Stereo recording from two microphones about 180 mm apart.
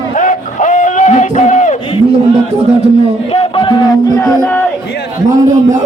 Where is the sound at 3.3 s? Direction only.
30° left (ahead or behind).